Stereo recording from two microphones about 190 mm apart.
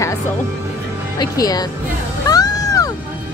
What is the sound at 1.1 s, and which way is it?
Speech, 20° left (ahead or behind).